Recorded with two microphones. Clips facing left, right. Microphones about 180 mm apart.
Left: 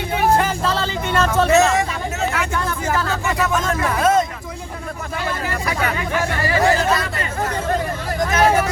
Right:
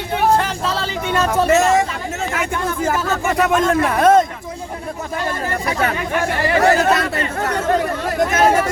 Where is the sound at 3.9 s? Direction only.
50° right (ahead or behind).